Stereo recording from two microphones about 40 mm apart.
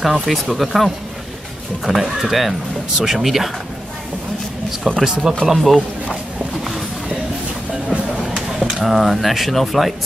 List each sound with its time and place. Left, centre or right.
0.0 s speech: centre
5.0 s speech: centre
5.5 s speech: centre
8.4 s a sound: centre
8.8 s speech: centre